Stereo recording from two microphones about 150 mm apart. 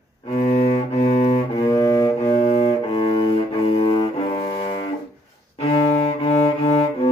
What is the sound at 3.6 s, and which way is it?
Cello, 40° left (ahead or behind).